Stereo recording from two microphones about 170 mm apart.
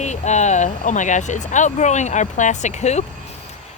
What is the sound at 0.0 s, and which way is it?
Speech, 45° left (ahead or behind).